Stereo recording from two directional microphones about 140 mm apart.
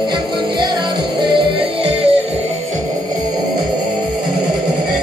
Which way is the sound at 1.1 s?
40° right (ahead or behind).